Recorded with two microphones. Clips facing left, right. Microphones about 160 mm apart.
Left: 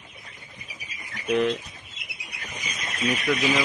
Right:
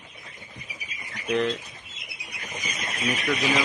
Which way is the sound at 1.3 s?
5° left (ahead or behind).